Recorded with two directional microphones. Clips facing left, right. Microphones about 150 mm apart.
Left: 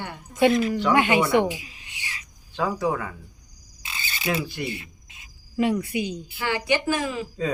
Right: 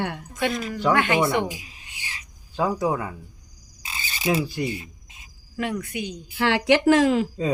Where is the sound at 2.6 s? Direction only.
15° right (ahead or behind).